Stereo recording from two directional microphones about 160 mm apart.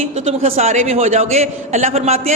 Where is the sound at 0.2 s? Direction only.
40° right (ahead or behind).